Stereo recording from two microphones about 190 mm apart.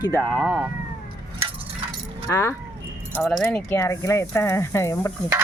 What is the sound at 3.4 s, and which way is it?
Speech, 10° left (ahead or behind).